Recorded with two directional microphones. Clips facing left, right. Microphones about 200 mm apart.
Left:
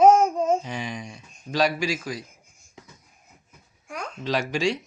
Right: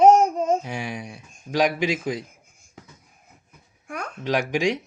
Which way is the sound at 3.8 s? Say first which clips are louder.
Right 2 dB; 65° right (ahead or behind).